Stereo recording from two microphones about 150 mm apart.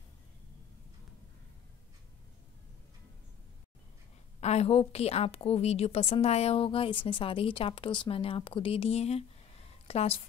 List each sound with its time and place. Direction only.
4.4 s a woman's voice: 45° left (ahead or behind)